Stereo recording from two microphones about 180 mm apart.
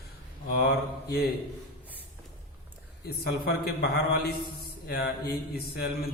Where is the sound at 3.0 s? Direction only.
60° left (ahead or behind).